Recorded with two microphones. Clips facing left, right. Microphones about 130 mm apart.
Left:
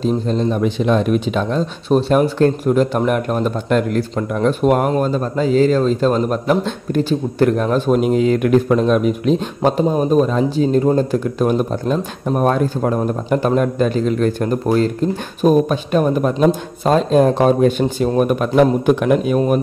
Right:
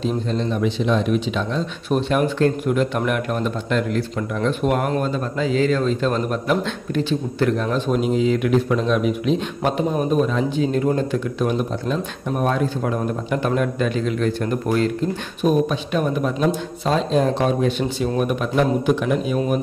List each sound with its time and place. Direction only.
0.0 s speech: 40° left (ahead or behind)
1.9 s speech: 35° left (ahead or behind)
9.6 s speech: 30° left (ahead or behind)